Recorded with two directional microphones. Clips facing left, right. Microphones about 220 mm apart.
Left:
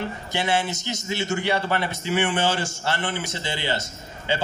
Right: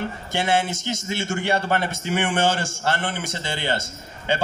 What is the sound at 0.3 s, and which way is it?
A man's voice, 50° right (ahead or behind).